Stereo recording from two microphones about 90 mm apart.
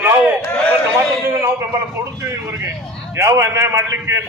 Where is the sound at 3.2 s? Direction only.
30° right (ahead or behind).